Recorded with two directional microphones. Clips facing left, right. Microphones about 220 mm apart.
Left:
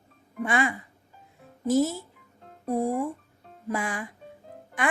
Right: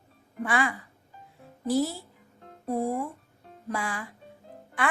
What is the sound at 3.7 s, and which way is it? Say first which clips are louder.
Speech: left 3 dB; 20° left (ahead or behind).